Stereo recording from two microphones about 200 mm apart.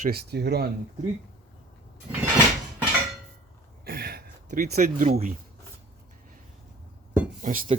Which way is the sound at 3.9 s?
55° right (ahead or behind).